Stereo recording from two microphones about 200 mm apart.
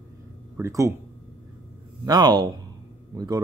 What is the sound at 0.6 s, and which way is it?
Speech, 15° right (ahead or behind).